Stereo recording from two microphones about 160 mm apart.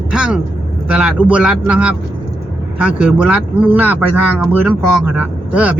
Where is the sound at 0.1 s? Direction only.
5° right (ahead or behind).